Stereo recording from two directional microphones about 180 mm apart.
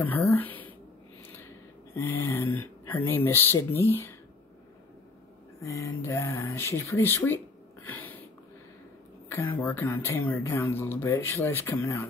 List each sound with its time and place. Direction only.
0.0 s speech: 15° left (ahead or behind)
2.0 s speech: 15° left (ahead or behind)
5.6 s speech: 15° left (ahead or behind)
7.8 s a sound: 10° left (ahead or behind)
9.3 s speech: 10° left (ahead or behind)